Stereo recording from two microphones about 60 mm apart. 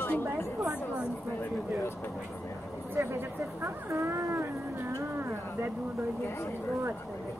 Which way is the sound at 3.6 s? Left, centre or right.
Right.